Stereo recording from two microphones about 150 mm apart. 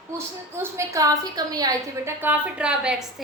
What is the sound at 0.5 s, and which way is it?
A woman's voice, 20° right (ahead or behind).